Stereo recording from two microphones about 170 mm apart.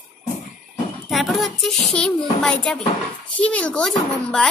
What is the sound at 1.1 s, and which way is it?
A woman's voice, centre (ahead or behind).